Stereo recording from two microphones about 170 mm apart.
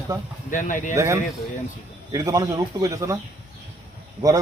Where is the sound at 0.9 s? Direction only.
15° right (ahead or behind).